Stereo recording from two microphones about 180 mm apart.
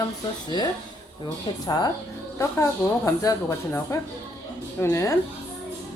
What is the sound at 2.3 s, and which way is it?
Speech, 15° left (ahead or behind).